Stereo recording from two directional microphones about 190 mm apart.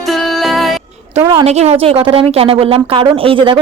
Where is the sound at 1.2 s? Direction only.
20° right (ahead or behind).